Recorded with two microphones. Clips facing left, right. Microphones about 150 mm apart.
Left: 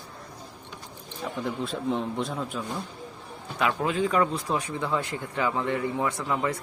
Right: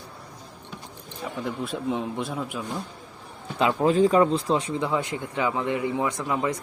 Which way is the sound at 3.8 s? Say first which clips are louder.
Right 8 dB; 35° right (ahead or behind).